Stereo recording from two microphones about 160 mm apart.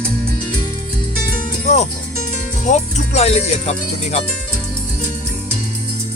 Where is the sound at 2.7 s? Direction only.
45° left (ahead or behind).